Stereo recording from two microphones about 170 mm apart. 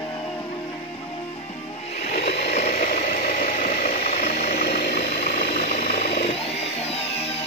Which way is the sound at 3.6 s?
60° left (ahead or behind).